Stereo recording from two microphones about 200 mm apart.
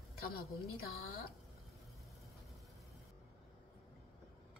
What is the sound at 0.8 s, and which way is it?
Speech, 50° left (ahead or behind).